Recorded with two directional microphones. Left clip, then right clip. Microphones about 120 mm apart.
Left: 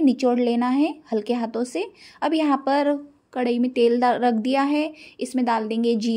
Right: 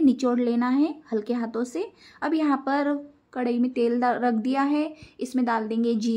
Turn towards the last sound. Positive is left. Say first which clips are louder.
# left 3 dB
turn(degrees=15)  # may be behind; listen again after turning